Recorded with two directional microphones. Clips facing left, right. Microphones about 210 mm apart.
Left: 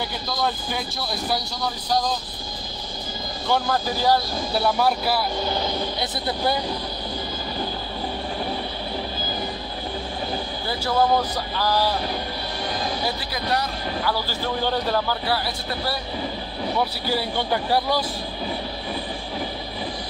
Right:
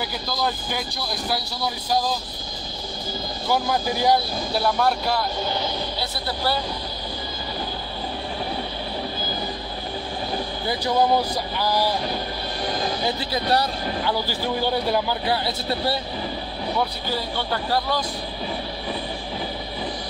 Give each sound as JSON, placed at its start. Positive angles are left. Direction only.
{"t": 0.4, "sound": "speech", "side_deg": 0}
{"t": 3.4, "sound": "a man's voice", "side_deg": -10}
{"t": 4.6, "sound": "speech", "side_deg": 5}
{"t": 5.9, "sound": "speech", "side_deg": 20}
{"t": 10.7, "sound": "a man's voice", "side_deg": -15}
{"t": 13.0, "sound": "speech", "side_deg": -25}
{"t": 14.1, "sound": "a man's voice", "side_deg": -15}
{"t": 17.1, "sound": "speech", "side_deg": 15}